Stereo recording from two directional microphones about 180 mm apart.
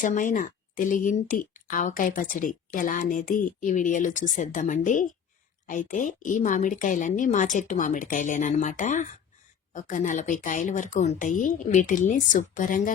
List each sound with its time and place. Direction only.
0.0 s speech: 45° left (ahead or behind)